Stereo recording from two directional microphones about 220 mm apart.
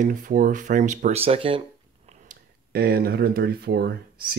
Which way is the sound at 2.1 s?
40° right (ahead or behind).